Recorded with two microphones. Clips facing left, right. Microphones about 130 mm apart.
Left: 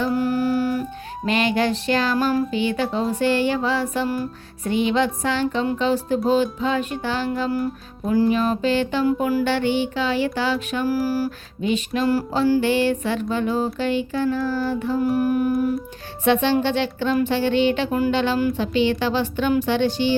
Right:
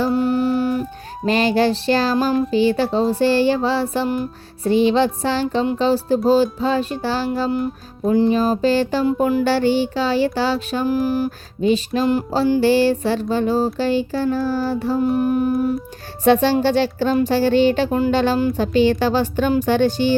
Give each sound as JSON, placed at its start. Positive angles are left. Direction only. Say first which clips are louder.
{"t": 0.0, "sound": "music", "louder": "right 3 dB", "side_deg": -25}
{"t": 1.2, "sound": "music", "louder": "right 4 dB", "side_deg": -35}
{"t": 10.8, "sound": "a sound", "louder": "right 3 dB", "side_deg": -20}
{"t": 11.6, "sound": "music", "louder": "right 4 dB", "side_deg": -35}
{"t": 16.2, "sound": "music", "louder": "right 4 dB", "side_deg": -40}